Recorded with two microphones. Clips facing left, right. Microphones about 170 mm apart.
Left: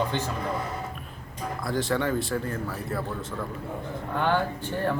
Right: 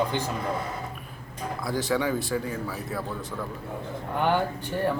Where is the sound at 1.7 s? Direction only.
Centre (ahead or behind).